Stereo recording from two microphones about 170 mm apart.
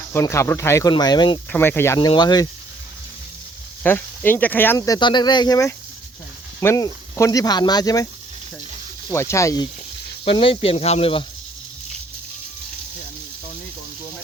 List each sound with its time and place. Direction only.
0.1 s speech: 15° left (ahead or behind)
1.5 s speech: 15° left (ahead or behind)
2.0 s speech: 25° left (ahead or behind)
3.8 s speech: 10° left (ahead or behind)
4.8 s speech: 25° left (ahead or behind)
9.0 s speech: 15° left (ahead or behind)
10.2 s speech: 30° left (ahead or behind)